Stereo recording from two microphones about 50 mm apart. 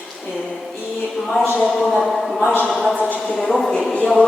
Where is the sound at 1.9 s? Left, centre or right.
Centre.